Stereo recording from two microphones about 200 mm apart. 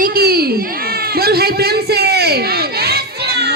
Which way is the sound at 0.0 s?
50° right (ahead or behind).